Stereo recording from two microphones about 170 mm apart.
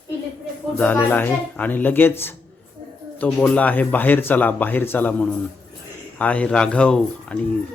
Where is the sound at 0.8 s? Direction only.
10° left (ahead or behind).